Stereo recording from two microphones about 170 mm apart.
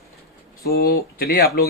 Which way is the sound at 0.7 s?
60° left (ahead or behind).